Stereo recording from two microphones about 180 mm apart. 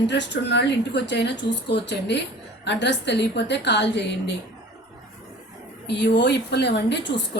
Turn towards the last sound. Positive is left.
turn(degrees=75)  # may be behind; listen again after turning